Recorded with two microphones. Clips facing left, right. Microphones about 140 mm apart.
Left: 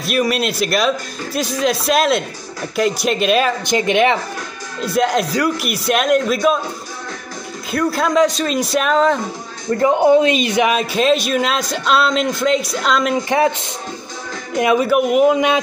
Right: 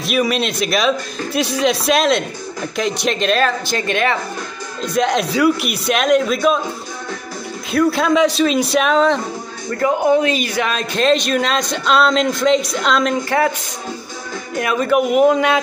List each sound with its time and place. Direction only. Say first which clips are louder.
0.0 s a man's voice: even; centre (ahead or behind); by 4.2 s 20° left (ahead or behind)
4.8 s a man's voice: left 1 dB; 5° left (ahead or behind)
7.7 s a man's voice: right 2 dB; centre (ahead or behind)
9.7 s speech: left 3 dB; 20° left (ahead or behind)
10.7 s a man's voice: left 1 dB; 5° left (ahead or behind)
13.3 s speech: left 2 dB; 20° left (ahead or behind)
14.5 s speech: left 4 dB; 15° left (ahead or behind)
14.9 s a man's voice: right 4 dB; centre (ahead or behind)